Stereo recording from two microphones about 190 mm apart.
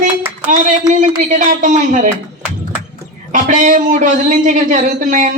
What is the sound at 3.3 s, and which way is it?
A woman's voice, 45° right (ahead or behind).